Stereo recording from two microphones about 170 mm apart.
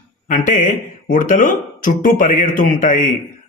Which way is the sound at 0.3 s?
50° left (ahead or behind).